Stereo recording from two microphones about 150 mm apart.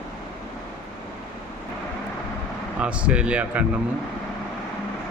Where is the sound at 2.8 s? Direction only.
10° right (ahead or behind).